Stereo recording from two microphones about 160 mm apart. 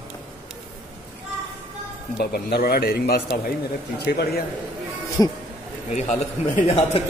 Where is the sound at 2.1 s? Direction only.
75° left (ahead or behind).